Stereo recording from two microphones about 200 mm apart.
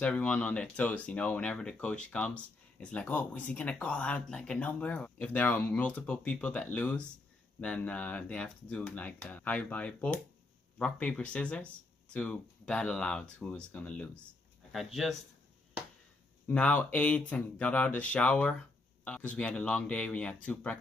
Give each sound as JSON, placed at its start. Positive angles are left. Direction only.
{"t": 0.0, "sound": "speech", "side_deg": 5}
{"t": 16.4, "sound": "speech", "side_deg": 5}